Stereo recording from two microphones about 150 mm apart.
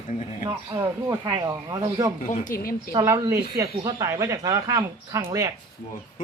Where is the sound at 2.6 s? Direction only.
75° left (ahead or behind).